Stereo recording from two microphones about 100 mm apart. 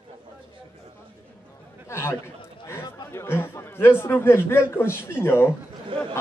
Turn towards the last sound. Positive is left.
turn(degrees=-60)  # may be behind; listen again after turning